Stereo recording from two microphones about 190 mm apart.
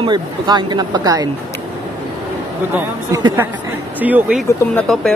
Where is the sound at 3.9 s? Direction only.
10° right (ahead or behind).